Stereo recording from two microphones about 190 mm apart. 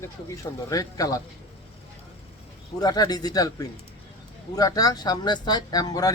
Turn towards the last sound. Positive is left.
turn(degrees=20)  # may be behind; listen again after turning